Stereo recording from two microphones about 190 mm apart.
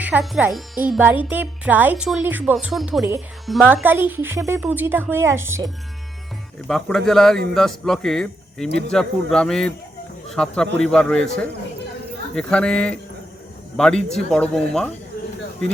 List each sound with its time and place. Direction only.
0.0 s speech: 5° right (ahead or behind)
6.7 s speech: centre (ahead or behind)